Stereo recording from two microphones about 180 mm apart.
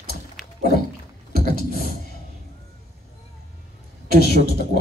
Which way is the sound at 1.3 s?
60° left (ahead or behind).